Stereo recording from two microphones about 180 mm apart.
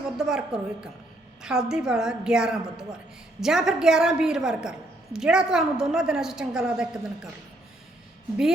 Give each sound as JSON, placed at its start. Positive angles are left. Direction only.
{"t": 0.2, "sound": "a woman's voice", "side_deg": -5}